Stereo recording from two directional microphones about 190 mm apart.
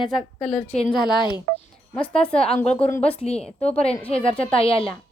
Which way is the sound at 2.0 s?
5° left (ahead or behind).